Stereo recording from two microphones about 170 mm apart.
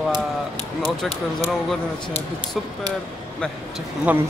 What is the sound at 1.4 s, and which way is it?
Speech, 10° left (ahead or behind).